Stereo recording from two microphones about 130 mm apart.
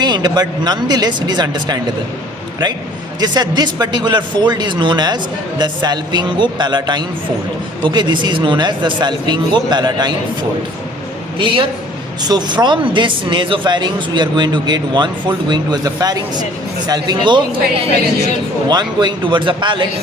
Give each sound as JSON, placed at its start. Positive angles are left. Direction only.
{"t": 0.0, "sound": "speech", "side_deg": -35}
{"t": 3.2, "sound": "speech", "side_deg": -30}
{"t": 11.3, "sound": "a man's voice", "side_deg": -40}
{"t": 18.7, "sound": "speech", "side_deg": -35}